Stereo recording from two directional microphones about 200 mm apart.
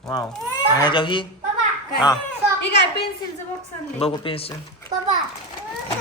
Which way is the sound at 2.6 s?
60° left (ahead or behind).